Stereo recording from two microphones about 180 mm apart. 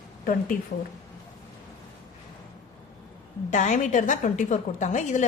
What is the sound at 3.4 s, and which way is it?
A woman's voice, 40° left (ahead or behind).